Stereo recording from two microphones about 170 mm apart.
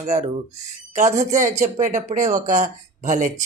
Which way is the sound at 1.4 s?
45° right (ahead or behind).